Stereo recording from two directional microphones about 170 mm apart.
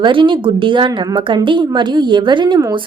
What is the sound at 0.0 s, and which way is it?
A woman's voice, 30° right (ahead or behind).